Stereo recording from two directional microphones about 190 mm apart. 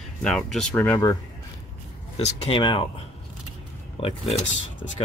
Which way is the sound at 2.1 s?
30° left (ahead or behind).